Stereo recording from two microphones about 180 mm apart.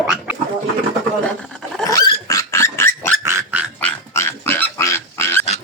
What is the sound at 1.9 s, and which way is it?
Dog, 20° left (ahead or behind).